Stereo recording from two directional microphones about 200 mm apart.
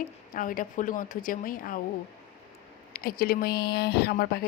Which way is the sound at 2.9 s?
45° left (ahead or behind).